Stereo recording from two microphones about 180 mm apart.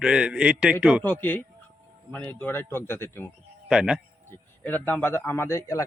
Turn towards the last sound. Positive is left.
turn(degrees=15)  # may be behind; listen again after turning